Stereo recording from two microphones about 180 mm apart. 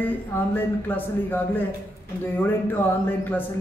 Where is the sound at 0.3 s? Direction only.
10° left (ahead or behind).